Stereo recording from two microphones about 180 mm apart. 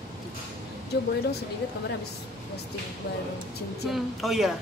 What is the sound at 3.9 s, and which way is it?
Speech, centre (ahead or behind).